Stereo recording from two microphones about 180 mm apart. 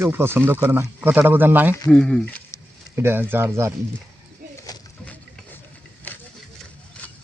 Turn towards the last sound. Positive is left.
turn(degrees=10)  # may be behind; listen again after turning